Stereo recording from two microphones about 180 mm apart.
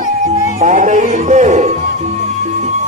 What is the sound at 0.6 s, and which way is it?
Music, 45° right (ahead or behind).